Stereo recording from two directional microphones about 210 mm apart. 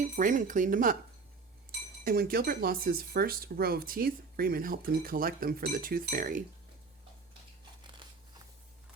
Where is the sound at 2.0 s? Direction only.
45° right (ahead or behind).